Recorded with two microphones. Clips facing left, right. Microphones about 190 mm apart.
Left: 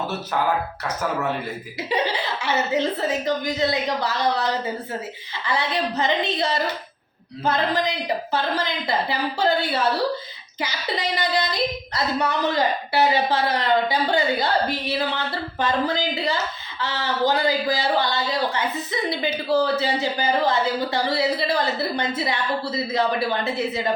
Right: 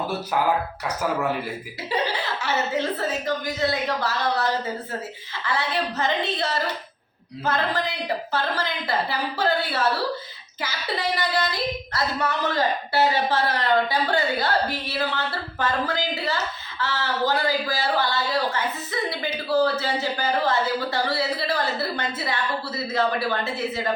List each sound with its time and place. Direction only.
2.4 s a woman's voice: 15° left (ahead or behind)
5.5 s a woman's voice: 15° left (ahead or behind)